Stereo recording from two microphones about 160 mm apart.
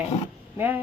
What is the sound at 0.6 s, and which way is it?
Speech, 10° right (ahead or behind).